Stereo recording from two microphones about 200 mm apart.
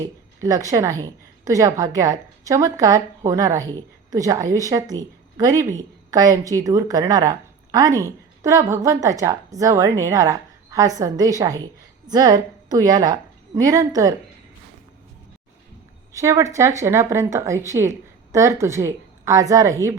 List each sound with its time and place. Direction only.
0.4 s a woman's voice: 15° right (ahead or behind)
16.1 s a woman's voice: 15° right (ahead or behind)